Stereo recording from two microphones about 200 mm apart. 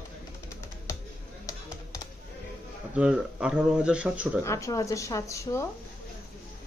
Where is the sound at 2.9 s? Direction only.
5° right (ahead or behind).